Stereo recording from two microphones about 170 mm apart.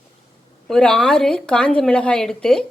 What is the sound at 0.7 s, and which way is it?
A woman's voice, 5° left (ahead or behind).